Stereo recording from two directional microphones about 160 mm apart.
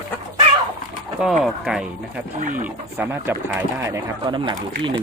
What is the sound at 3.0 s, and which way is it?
Speech, 15° right (ahead or behind).